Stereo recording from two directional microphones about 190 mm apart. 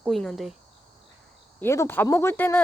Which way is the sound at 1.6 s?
15° left (ahead or behind).